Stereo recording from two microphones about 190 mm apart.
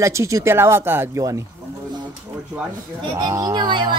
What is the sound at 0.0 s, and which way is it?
Speech, 15° right (ahead or behind).